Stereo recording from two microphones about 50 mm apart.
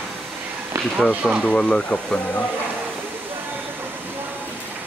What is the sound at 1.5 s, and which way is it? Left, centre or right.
Speech, centre.